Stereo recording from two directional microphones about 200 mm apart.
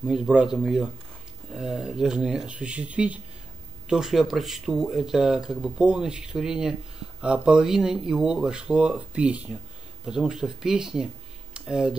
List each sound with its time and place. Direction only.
0.0 s speech: 5° right (ahead or behind)